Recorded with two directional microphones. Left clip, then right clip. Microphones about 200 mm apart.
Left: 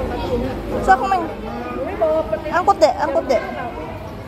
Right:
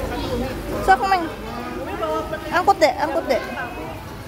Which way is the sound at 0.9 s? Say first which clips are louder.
Left 1 dB; 25° right (ahead or behind).